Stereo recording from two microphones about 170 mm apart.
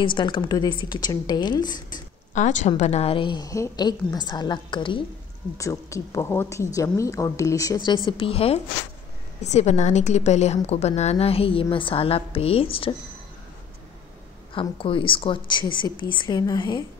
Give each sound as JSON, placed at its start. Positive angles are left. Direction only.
{"t": 0.0, "sound": "a woman's voice", "side_deg": 30}
{"t": 2.3, "sound": "a woman's voice", "side_deg": 45}
{"t": 5.6, "sound": "a woman's voice", "side_deg": 20}
{"t": 14.5, "sound": "a woman's voice", "side_deg": 30}